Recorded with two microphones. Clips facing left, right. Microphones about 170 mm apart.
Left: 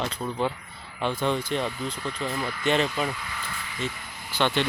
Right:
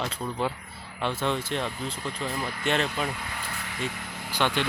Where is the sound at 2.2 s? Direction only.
Centre (ahead or behind).